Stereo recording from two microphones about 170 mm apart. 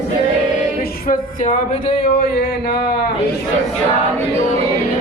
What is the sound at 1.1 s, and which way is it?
Speech, 45° left (ahead or behind).